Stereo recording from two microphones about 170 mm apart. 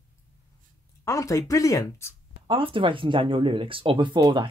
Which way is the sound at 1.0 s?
20° left (ahead or behind).